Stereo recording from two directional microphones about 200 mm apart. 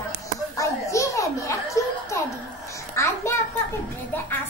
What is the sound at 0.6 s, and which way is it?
Children playing, 15° left (ahead or behind).